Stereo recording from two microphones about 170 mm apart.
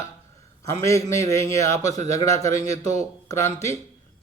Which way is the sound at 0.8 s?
20° left (ahead or behind).